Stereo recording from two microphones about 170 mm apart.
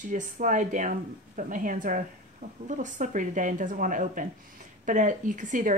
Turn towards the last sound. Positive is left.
turn(degrees=-50)  # may be behind; listen again after turning